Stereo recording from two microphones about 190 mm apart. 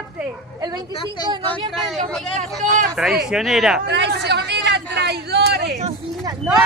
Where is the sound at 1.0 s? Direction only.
20° left (ahead or behind).